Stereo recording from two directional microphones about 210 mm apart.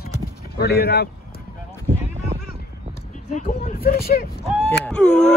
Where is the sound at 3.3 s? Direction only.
35° left (ahead or behind).